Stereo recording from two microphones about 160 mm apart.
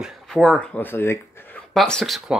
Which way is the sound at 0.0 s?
Centre (ahead or behind).